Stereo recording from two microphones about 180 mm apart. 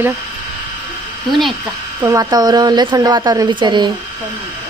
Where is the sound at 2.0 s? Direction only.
20° right (ahead or behind).